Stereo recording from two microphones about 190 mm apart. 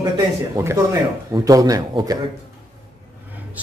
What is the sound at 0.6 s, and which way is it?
Speech, 15° right (ahead or behind).